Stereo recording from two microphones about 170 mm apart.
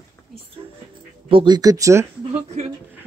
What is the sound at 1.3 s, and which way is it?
Speech, 30° right (ahead or behind).